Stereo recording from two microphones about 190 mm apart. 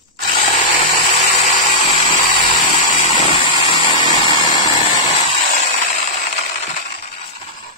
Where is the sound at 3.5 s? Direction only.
25° left (ahead or behind).